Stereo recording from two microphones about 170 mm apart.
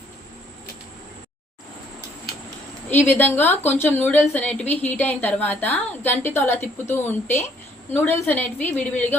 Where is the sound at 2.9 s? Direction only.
10° left (ahead or behind).